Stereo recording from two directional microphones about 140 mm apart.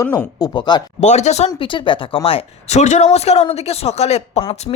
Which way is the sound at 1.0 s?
55° left (ahead or behind).